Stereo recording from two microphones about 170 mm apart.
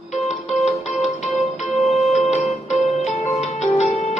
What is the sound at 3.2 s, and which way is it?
Music, 40° left (ahead or behind).